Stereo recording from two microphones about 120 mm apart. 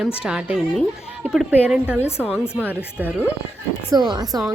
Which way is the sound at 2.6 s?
15° right (ahead or behind).